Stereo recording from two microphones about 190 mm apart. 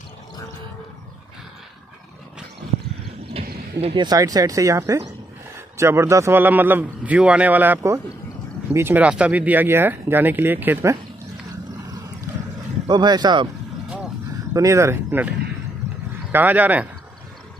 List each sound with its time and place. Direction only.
3.4 s a sound: 30° right (ahead or behind)
3.8 s speech: 25° right (ahead or behind)
12.8 s speech: 20° right (ahead or behind)
14.5 s speech: 15° right (ahead or behind)